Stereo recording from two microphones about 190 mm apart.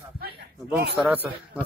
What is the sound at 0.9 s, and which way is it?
Speech, 10° right (ahead or behind).